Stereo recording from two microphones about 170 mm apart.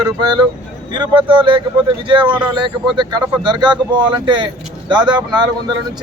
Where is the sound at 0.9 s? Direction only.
30° right (ahead or behind).